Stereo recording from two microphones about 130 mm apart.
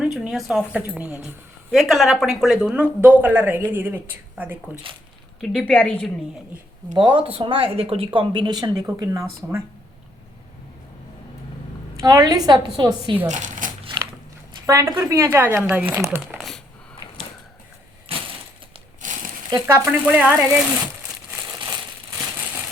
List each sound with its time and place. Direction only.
0.0 s speech: 5° right (ahead or behind)
1.7 s speech: centre (ahead or behind); by 4.5 s 15° right (ahead or behind)
5.4 s a woman's voice: 5° left (ahead or behind)
6.9 s a woman's voice: 40° right (ahead or behind); by 9.6 s 25° right (ahead or behind)
11.9 s a woman's voice: 25° right (ahead or behind)
13.2 s speech: 70° right (ahead or behind)
13.8 s biting: 40° right (ahead or behind)
14.9 s a woman's voice: 20° right (ahead or behind)
18.1 s crushing: 50° right (ahead or behind)
19.0 s crumpling: 80° right
19.5 s a woman's voice: 25° right (ahead or behind)
19.8 s speech: 10° right (ahead or behind)